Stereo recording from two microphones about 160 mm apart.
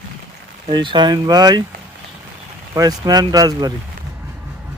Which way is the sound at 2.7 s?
20° right (ahead or behind).